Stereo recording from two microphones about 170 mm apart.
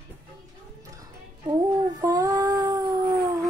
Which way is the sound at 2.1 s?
20° right (ahead or behind).